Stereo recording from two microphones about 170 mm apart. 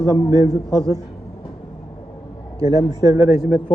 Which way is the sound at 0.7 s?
20° right (ahead or behind).